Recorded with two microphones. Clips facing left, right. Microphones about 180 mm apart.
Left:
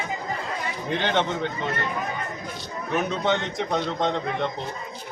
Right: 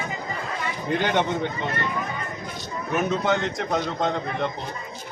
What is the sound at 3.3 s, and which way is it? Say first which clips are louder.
A man's voice: right 1 dB; centre (ahead or behind).